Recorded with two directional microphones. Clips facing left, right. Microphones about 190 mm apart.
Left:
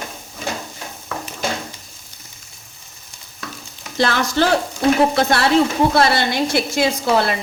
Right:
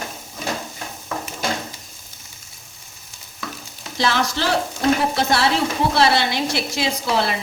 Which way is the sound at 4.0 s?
50° left (ahead or behind).